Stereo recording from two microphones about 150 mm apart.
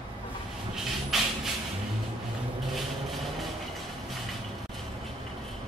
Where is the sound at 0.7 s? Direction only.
Centre (ahead or behind).